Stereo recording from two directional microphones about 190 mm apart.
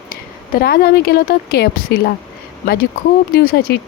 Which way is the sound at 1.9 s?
55° left (ahead or behind).